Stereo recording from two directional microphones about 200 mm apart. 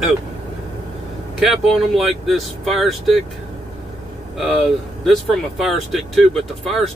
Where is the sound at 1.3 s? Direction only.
Centre (ahead or behind).